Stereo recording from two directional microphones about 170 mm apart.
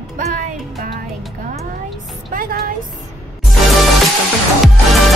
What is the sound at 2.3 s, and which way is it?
Speech, 65° right (ahead or behind).